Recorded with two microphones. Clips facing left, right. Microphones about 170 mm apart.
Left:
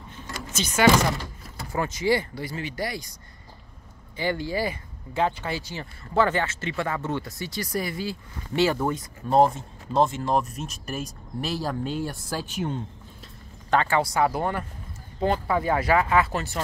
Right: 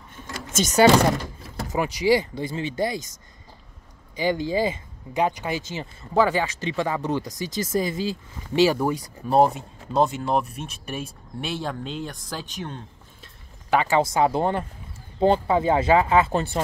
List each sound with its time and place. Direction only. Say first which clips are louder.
0.1 s a sound: right 4 dB; 45° right (ahead or behind)
0.8 s speech: right 2 dB; 35° right (ahead or behind)
1.7 s speech: right 3 dB; 15° right (ahead or behind)
4.2 s speech: right 4 dB; 15° right (ahead or behind); by 10.4 s centre (ahead or behind)
11.4 s speech: left 1 dB; centre (ahead or behind)
13.7 s speech: right 2 dB; 15° right (ahead or behind)